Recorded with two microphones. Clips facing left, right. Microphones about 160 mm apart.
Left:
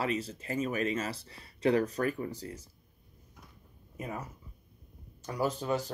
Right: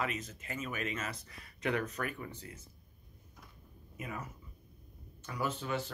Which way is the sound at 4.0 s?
35° left (ahead or behind).